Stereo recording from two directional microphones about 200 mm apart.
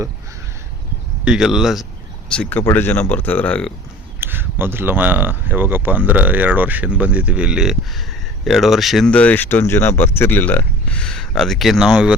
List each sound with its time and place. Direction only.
1.2 s speech: 5° right (ahead or behind)
4.2 s speech: 10° right (ahead or behind)